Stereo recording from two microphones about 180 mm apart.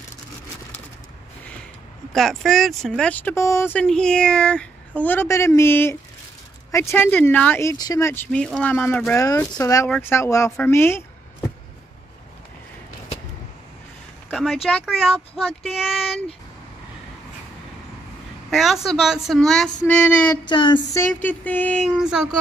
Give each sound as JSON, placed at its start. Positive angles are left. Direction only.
{"t": 2.1, "sound": "speech", "side_deg": 0}
{"t": 9.8, "sound": "a woman's voice", "side_deg": 5}
{"t": 10.1, "sound": "speech", "side_deg": 15}
{"t": 14.3, "sound": "a woman's voice", "side_deg": 0}
{"t": 18.5, "sound": "a woman's voice", "side_deg": 0}
{"t": 20.4, "sound": "speech", "side_deg": 25}
{"t": 21.2, "sound": "speech", "side_deg": 10}
{"t": 21.9, "sound": "a woman's voice", "side_deg": -5}